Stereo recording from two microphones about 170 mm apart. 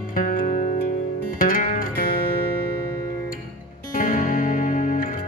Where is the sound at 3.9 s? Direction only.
55° left (ahead or behind).